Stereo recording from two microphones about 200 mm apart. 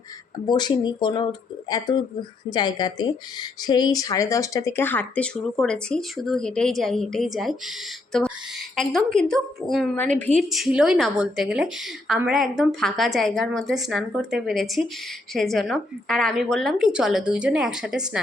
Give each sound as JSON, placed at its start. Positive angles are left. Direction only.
{"t": 0.4, "sound": "speech", "side_deg": 20}
{"t": 8.7, "sound": "speech", "side_deg": 0}